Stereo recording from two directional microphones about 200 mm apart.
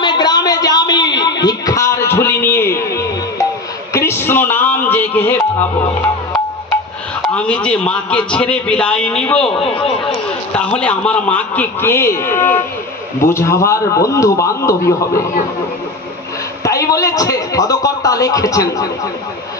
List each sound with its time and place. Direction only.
0.0 s a sound: 20° left (ahead or behind)
3.9 s music: 15° left (ahead or behind)
7.2 s a man's voice: 5° left (ahead or behind)
9.6 s speech: 25° left (ahead or behind)
10.0 s a man's voice: 5° left (ahead or behind)
16.6 s a sound: 15° left (ahead or behind)